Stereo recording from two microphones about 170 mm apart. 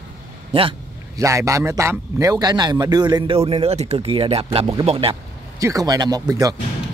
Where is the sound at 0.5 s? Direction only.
30° right (ahead or behind).